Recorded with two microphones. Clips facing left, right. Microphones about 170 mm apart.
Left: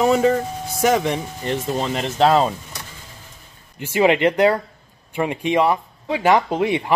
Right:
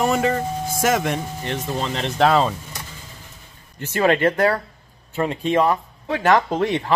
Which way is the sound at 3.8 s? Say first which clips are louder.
Left 2 dB; 15° left (ahead or behind).